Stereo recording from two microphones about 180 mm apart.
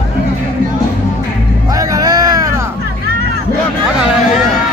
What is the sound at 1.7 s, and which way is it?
Music, 20° right (ahead or behind).